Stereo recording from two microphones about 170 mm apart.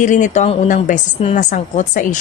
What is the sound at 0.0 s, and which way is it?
A woman's voice, 45° left (ahead or behind).